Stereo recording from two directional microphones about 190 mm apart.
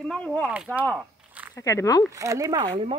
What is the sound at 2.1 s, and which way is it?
Speech, 15° right (ahead or behind).